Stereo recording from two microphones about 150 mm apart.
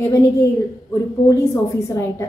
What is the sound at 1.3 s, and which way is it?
Speech, 20° left (ahead or behind).